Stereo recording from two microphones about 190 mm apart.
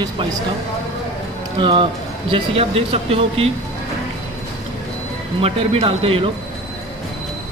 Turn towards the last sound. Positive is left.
turn(degrees=-30)  # may be behind; listen again after turning